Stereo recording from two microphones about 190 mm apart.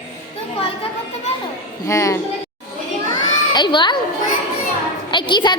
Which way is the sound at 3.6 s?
25° left (ahead or behind).